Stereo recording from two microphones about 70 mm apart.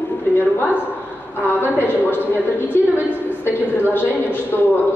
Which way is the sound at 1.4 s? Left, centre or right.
Left.